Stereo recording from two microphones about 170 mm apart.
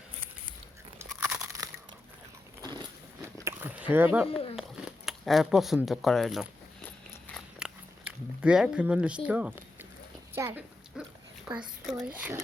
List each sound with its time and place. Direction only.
0.9 s crunch: 15° right (ahead or behind)
2.6 s a sound: 20° right (ahead or behind)
4.3 s speech: 35° left (ahead or behind)
4.5 s speech: 5° right (ahead or behind)
7.3 s biting: 5° right (ahead or behind)
10.3 s a sound: 10° right (ahead or behind)
11.5 s speech: 5° right (ahead or behind)